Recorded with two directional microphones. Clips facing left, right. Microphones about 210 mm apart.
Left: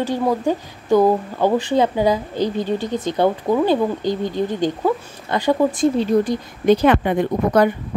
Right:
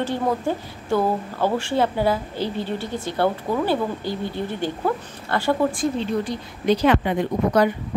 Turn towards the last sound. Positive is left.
turn(degrees=50)  # may be behind; listen again after turning